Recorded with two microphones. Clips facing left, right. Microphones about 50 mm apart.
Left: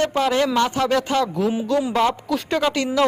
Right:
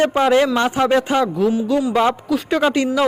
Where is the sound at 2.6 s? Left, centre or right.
Centre.